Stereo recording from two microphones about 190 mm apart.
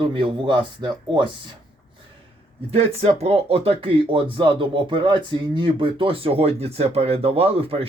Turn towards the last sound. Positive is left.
turn(degrees=-30)  # may be behind; listen again after turning